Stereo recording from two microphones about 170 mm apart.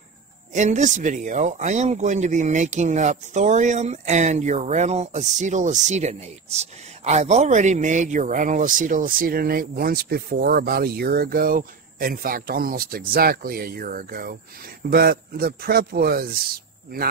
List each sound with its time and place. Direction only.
0.5 s speech: 45° right (ahead or behind); by 17.1 s 60° right (ahead or behind)